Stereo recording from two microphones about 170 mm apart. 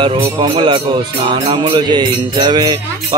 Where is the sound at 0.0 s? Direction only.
30° right (ahead or behind).